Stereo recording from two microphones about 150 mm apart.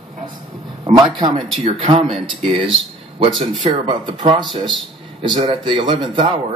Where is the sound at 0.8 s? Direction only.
30° right (ahead or behind).